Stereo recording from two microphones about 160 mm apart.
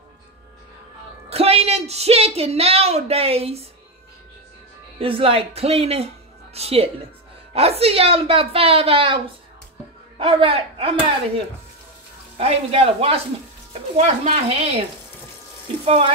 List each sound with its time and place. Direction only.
1.3 s speech: 40° right (ahead or behind)
4.9 s speech: 35° right (ahead or behind)